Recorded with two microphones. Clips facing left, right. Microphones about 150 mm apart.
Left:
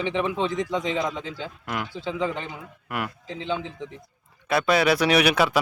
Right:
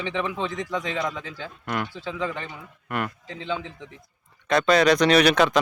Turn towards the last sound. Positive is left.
turn(degrees=5)  # may be behind; listen again after turning